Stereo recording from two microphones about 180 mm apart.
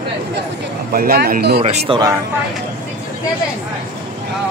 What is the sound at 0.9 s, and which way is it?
Speech, 60° right (ahead or behind).